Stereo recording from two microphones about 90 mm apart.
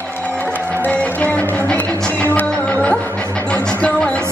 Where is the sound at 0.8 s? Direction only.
15° left (ahead or behind).